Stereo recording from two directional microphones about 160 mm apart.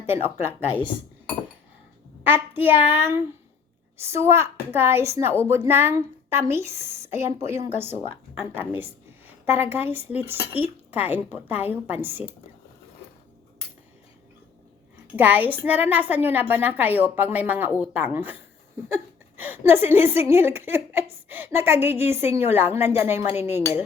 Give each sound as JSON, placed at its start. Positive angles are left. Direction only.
{"t": 0.0, "sound": "a woman's voice", "side_deg": -15}
{"t": 2.2, "sound": "a woman's voice", "side_deg": -10}
{"t": 15.0, "sound": "a woman's voice", "side_deg": -10}